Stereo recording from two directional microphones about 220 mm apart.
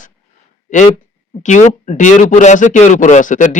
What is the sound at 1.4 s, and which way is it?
A man's voice, 35° left (ahead or behind).